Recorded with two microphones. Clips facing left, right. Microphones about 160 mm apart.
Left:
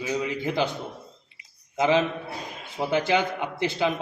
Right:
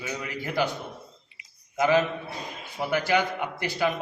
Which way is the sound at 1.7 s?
20° left (ahead or behind).